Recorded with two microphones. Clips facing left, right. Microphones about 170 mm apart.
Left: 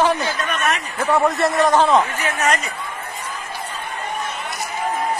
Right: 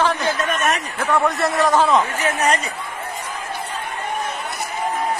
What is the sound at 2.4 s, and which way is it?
Speech, 35° right (ahead or behind).